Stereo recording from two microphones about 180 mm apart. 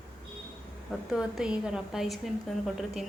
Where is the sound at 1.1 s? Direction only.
5° right (ahead or behind).